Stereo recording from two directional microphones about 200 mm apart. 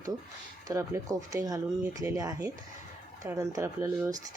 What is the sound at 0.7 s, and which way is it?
Speech, 15° right (ahead or behind).